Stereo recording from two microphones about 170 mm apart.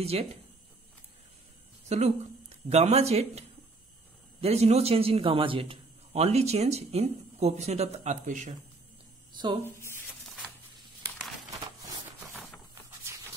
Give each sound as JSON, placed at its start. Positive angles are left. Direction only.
{"t": 0.0, "sound": "a man's voice", "side_deg": -35}
{"t": 1.9, "sound": "a man's voice", "side_deg": -40}
{"t": 9.3, "sound": "speech", "side_deg": -25}